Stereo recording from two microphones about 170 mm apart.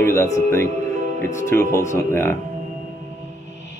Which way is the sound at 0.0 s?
15° left (ahead or behind).